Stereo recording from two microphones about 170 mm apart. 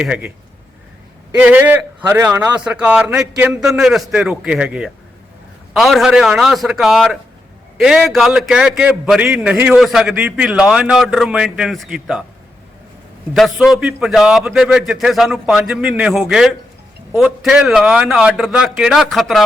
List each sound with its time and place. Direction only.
0.0 s a man's voice: 5° right (ahead or behind)
1.4 s a man's voice: 10° right (ahead or behind)
13.3 s a man's voice: centre (ahead or behind)